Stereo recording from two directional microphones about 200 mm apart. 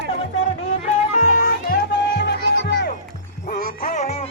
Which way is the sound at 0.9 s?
40° left (ahead or behind).